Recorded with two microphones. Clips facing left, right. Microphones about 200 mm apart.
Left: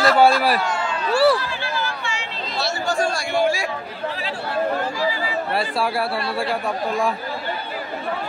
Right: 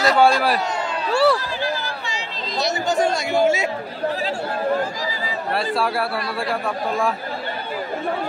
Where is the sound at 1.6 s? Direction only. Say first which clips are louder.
Right 1 dB; 40° right (ahead or behind).